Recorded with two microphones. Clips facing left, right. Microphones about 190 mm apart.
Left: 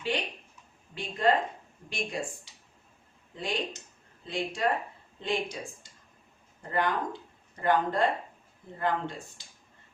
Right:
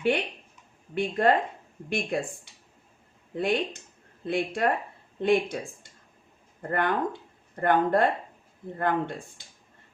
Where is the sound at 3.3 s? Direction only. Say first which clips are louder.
Right 7 dB; 55° right (ahead or behind).